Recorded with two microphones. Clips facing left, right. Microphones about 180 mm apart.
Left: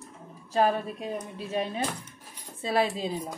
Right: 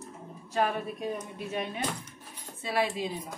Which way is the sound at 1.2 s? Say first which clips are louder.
Left 3 dB; 35° left (ahead or behind).